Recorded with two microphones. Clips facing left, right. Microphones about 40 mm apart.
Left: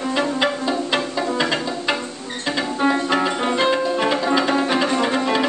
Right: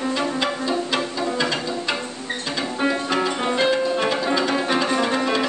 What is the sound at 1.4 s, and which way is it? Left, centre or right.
Pizzicato, centre.